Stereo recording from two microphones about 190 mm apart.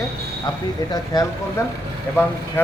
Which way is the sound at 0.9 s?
20° left (ahead or behind).